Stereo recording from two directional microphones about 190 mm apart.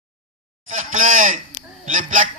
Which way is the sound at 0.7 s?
40° right (ahead or behind).